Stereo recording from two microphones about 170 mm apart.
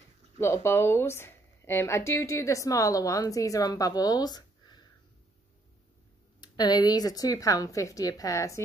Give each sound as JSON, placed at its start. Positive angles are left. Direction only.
{"t": 0.4, "sound": "speech", "side_deg": 15}
{"t": 6.4, "sound": "speech", "side_deg": 25}